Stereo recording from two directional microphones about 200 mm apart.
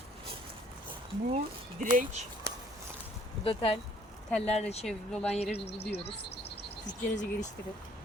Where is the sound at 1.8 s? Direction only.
40° right (ahead or behind).